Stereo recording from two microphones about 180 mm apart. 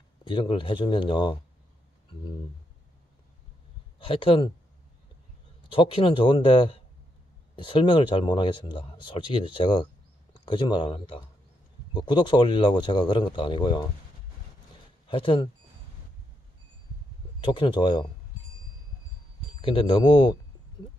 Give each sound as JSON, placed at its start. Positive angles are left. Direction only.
{"t": 0.2, "sound": "speech", "side_deg": 25}
{"t": 4.0, "sound": "speech", "side_deg": 30}
{"t": 5.7, "sound": "speech", "side_deg": 30}
{"t": 15.0, "sound": "speech", "side_deg": 30}
{"t": 17.4, "sound": "speech", "side_deg": 25}
{"t": 19.6, "sound": "speech", "side_deg": 30}